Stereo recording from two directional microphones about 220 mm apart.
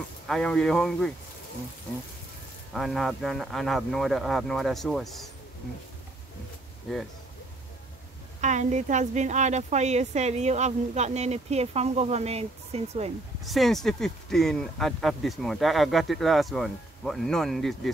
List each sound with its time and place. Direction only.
0.3 s speech: 5° left (ahead or behind)
2.7 s speech: centre (ahead or behind)
6.9 s speech: centre (ahead or behind)
8.4 s a woman's voice: 35° right (ahead or behind)
13.4 s speech: centre (ahead or behind)